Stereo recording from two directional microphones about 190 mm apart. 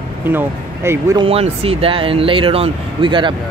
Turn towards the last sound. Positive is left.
turn(degrees=-25)  # may be behind; listen again after turning